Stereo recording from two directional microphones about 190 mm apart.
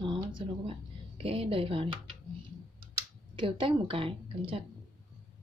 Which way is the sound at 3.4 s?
25° right (ahead or behind).